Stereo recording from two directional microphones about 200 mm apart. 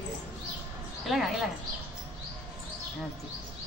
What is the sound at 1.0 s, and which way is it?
Speech, centre (ahead or behind).